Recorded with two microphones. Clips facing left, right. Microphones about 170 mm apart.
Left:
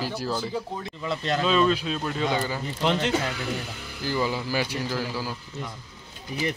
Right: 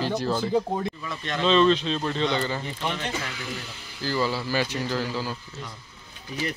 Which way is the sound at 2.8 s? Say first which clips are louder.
Left 11 dB; 90° left.